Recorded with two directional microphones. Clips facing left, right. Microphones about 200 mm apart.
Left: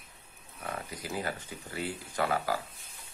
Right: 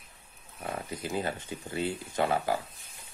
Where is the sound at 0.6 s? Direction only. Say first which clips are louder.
Right 3 dB; 25° right (ahead or behind).